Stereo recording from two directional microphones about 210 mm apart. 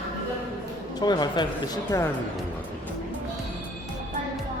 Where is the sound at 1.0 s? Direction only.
20° left (ahead or behind).